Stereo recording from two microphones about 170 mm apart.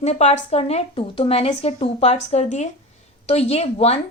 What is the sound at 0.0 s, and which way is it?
Speech, 40° left (ahead or behind).